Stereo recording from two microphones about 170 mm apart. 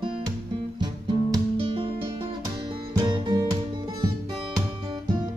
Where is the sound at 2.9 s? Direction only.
25° right (ahead or behind).